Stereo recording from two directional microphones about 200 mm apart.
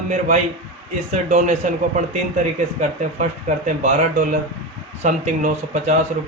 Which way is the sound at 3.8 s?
40° right (ahead or behind).